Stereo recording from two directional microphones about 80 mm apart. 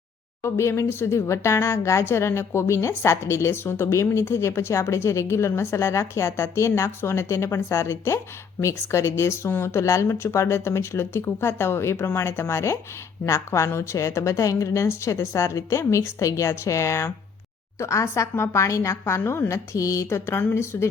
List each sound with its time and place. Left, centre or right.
0.4 s speech: left